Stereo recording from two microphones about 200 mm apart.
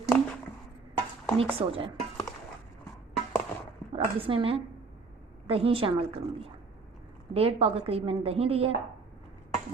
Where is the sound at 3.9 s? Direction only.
25° right (ahead or behind).